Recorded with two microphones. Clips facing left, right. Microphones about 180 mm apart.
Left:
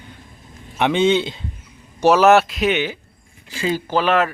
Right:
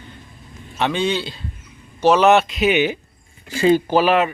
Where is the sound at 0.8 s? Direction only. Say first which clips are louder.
Left 4 dB; 20° left (ahead or behind).